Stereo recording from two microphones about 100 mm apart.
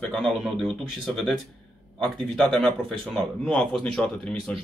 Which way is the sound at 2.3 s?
5° left (ahead or behind).